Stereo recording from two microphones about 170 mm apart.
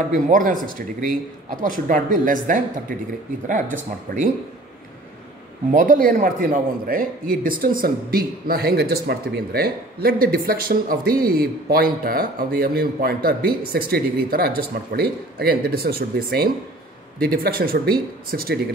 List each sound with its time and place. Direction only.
0.1 s a man's voice: 50° right (ahead or behind)
5.7 s a man's voice: 50° right (ahead or behind)